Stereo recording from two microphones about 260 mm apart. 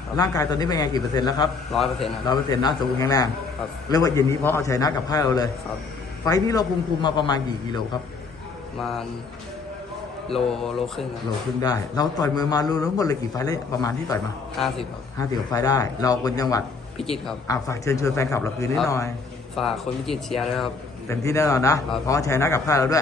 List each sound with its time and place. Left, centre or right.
0.2 s a man's voice: centre
1.7 s speech: centre
2.2 s a man's voice: centre
10.2 s speech: centre
11.6 s a man's voice: centre
19.5 s speech: centre
21.1 s a man's voice: centre